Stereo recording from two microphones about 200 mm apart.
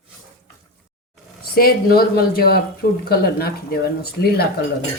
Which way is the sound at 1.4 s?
50° left (ahead or behind).